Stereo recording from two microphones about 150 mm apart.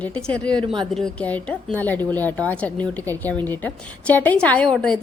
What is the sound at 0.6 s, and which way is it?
Speech, 30° right (ahead or behind).